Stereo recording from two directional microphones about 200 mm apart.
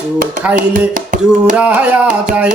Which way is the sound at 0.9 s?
40° right (ahead or behind).